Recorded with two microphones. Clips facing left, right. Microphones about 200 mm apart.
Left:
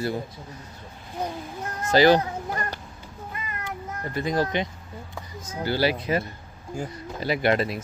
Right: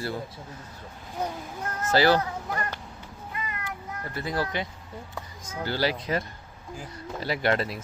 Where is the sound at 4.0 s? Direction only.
20° left (ahead or behind).